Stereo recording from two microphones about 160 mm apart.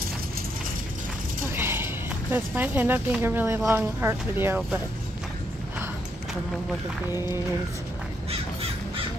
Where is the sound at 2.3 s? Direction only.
10° right (ahead or behind).